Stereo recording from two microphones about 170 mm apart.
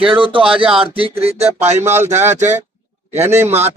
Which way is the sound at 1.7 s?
15° right (ahead or behind).